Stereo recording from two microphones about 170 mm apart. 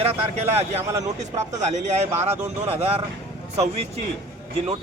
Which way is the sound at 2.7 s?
35° right (ahead or behind).